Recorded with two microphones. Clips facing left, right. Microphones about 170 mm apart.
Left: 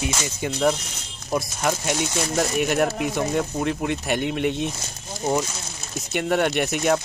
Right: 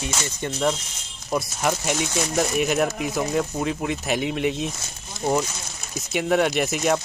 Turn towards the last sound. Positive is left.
turn(degrees=0)  # may be behind; listen again after turning